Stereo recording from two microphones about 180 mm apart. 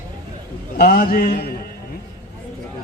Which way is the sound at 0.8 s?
50° left (ahead or behind).